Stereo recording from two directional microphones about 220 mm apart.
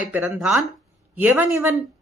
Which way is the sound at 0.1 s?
5° right (ahead or behind).